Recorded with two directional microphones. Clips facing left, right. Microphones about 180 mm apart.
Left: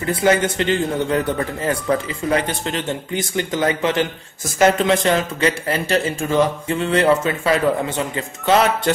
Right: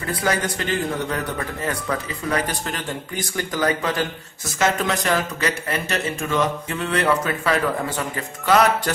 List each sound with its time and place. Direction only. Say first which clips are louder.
0.1 s speech: left 6 dB; 25° left (ahead or behind)